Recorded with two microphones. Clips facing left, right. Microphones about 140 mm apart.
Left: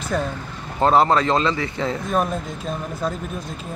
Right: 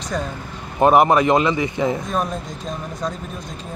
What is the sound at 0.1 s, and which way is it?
Speech, centre (ahead or behind).